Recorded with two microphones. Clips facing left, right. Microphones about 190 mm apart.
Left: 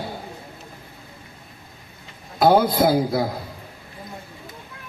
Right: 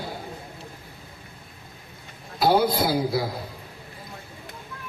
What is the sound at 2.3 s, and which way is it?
Music, 50° left (ahead or behind).